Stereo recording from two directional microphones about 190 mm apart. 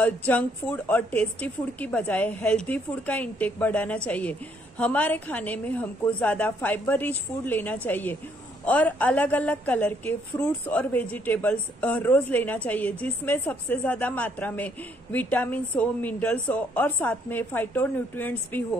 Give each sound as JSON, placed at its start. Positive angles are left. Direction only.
{"t": 0.3, "sound": "a woman's voice", "side_deg": 10}